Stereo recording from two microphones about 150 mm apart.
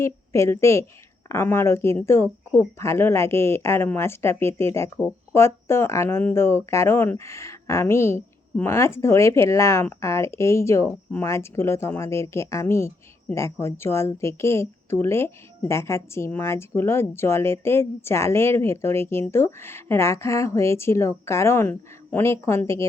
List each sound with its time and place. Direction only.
0.0 s a woman's voice: 20° left (ahead or behind)